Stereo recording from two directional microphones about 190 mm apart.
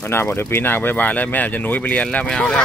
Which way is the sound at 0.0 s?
10° left (ahead or behind).